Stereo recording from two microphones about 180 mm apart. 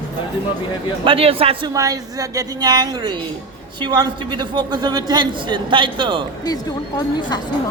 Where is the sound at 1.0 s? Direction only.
30° right (ahead or behind).